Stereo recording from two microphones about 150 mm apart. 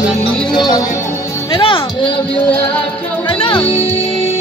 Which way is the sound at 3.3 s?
35° left (ahead or behind).